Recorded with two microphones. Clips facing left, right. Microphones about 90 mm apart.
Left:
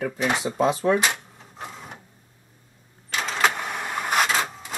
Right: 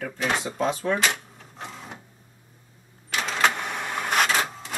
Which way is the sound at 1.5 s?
5° left (ahead or behind).